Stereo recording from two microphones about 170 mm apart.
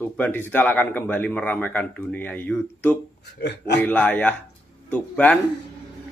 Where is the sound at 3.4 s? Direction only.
85° left.